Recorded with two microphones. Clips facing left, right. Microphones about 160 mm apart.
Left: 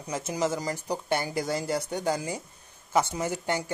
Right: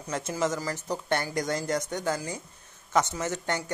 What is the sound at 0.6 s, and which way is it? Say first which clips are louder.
Speech: left 1 dB; 20° left (ahead or behind).